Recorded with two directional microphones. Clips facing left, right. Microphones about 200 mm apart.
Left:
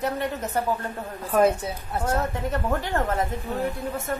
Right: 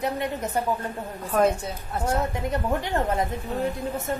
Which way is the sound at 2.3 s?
15° right (ahead or behind).